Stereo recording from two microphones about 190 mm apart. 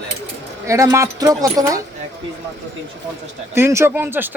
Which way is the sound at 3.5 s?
15° right (ahead or behind).